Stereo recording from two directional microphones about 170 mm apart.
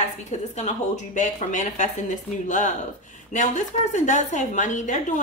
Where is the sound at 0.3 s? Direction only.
45° left (ahead or behind).